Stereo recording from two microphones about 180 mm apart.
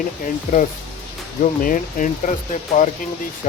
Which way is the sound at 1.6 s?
50° left (ahead or behind).